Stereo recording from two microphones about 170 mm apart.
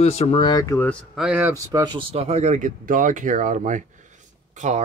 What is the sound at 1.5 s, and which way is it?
Speech, 20° right (ahead or behind).